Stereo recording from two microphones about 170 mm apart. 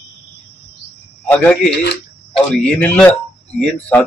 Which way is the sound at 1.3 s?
10° left (ahead or behind).